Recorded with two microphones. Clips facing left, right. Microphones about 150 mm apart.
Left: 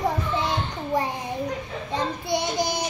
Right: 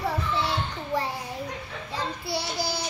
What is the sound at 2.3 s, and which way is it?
Child singing, 20° left (ahead or behind).